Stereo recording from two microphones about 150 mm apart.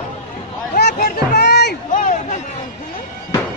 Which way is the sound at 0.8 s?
90° left.